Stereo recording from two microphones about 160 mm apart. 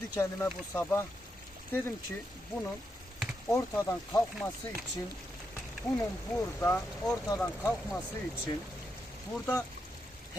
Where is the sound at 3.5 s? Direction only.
15° left (ahead or behind).